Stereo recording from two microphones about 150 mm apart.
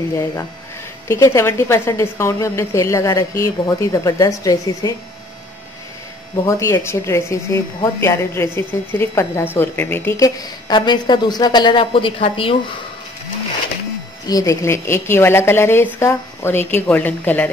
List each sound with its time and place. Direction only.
0.1 s speech: 20° left (ahead or behind)
6.4 s speech: 20° left (ahead or behind); by 12.5 s 35° left (ahead or behind)
14.2 s a woman's voice: 25° left (ahead or behind)